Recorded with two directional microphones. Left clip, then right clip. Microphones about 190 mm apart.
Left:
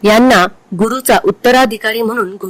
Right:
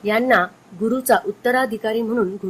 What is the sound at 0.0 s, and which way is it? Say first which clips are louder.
Speech: left 9 dB; 60° left (ahead or behind).